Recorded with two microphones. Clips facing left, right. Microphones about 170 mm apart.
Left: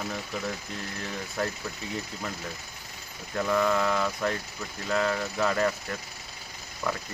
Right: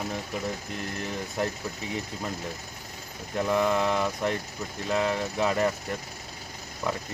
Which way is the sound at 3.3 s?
20° right (ahead or behind).